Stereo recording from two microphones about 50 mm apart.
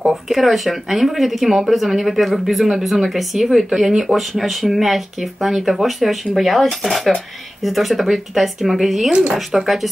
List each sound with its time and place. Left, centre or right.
0.1 s speech: centre
9.1 s speech: right
9.5 s speech: centre